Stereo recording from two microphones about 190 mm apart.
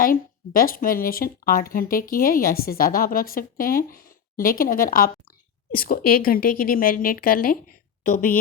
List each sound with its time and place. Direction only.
0.0 s speech: 50° left (ahead or behind)